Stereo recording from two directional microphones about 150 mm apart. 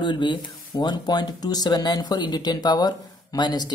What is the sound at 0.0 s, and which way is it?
Speech, 30° left (ahead or behind).